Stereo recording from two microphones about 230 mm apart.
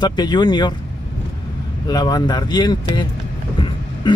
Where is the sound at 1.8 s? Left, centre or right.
Centre.